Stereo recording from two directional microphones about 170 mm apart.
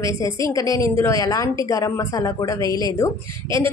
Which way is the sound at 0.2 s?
20° left (ahead or behind).